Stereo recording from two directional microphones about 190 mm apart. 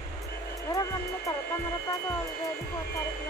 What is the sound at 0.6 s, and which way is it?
Speech, 15° left (ahead or behind).